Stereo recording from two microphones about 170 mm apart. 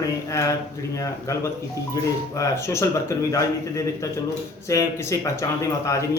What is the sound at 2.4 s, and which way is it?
A man's voice, 15° left (ahead or behind).